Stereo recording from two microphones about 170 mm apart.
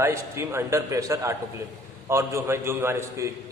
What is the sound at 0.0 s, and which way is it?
A man's voice, 15° right (ahead or behind).